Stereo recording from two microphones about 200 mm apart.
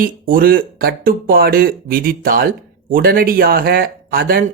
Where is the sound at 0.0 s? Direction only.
45° right (ahead or behind).